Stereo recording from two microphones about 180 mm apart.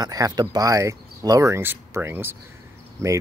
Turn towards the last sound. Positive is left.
turn(degrees=-15)  # may be behind; listen again after turning